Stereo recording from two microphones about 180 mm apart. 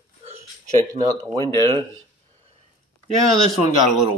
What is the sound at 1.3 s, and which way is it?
Speech, 15° left (ahead or behind).